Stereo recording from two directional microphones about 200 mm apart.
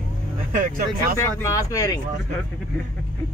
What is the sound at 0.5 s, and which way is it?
Speech, 40° right (ahead or behind).